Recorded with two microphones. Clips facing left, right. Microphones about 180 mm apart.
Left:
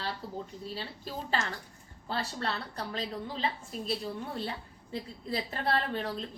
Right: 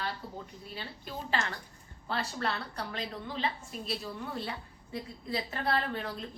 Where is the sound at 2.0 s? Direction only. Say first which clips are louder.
Even; 30° left (ahead or behind).